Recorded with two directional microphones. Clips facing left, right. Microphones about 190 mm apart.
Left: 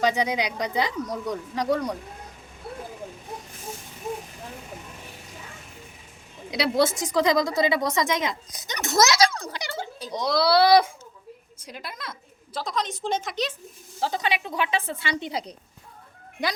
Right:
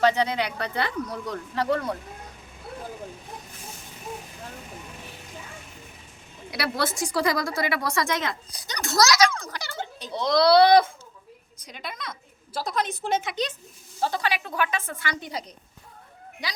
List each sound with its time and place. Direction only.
0.0 s a child's voice: 10° left (ahead or behind)
6.5 s a woman's voice: 20° left (ahead or behind)
9.2 s a sound: 35° left (ahead or behind)
10.0 s a child's voice: 10° left (ahead or behind)
14.0 s a woman's voice: 20° left (ahead or behind)